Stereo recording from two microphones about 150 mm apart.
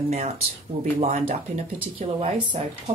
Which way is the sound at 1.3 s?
40° right (ahead or behind).